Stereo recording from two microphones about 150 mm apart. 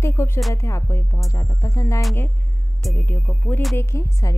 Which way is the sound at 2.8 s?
10° left (ahead or behind).